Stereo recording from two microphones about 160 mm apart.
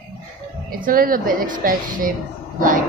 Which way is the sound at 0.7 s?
65° right (ahead or behind).